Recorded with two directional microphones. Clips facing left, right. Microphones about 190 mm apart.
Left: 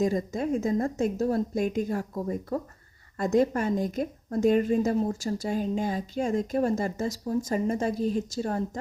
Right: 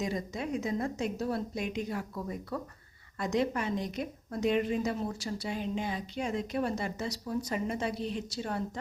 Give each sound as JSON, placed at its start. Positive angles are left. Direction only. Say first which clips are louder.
{"t": 0.0, "sound": "a woman's voice", "louder": "left 8 dB", "side_deg": 45}